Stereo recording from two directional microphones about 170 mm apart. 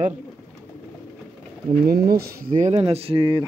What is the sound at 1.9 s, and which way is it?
Speech, 60° right (ahead or behind).